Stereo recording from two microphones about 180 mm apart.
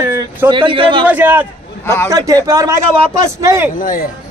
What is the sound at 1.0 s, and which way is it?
A man's voice, 10° right (ahead or behind).